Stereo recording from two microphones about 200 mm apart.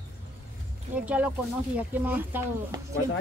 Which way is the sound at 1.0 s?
10° right (ahead or behind).